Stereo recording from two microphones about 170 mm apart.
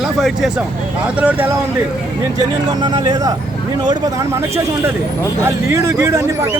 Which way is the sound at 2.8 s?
25° right (ahead or behind).